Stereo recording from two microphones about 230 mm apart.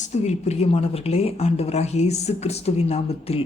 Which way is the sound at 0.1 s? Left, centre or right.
Left.